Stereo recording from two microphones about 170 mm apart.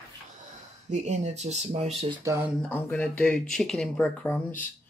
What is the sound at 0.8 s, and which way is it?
Speech, 40° right (ahead or behind).